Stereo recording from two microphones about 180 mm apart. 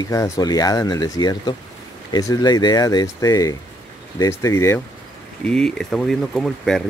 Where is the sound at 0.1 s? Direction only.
20° left (ahead or behind).